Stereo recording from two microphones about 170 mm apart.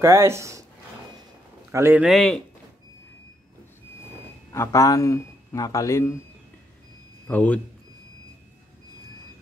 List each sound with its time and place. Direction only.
0.0 s speech: 15° right (ahead or behind)
1.7 s a man's voice: 15° right (ahead or behind)
2.0 s speech: centre (ahead or behind)
4.5 s a man's voice: 20° left (ahead or behind)
7.2 s a man's voice: 10° left (ahead or behind)